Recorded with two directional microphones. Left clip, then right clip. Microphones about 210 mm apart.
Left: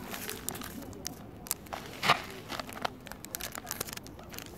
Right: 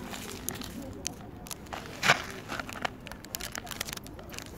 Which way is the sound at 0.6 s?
10° left (ahead or behind).